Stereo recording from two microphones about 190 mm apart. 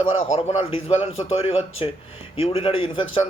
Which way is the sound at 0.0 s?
30° left (ahead or behind).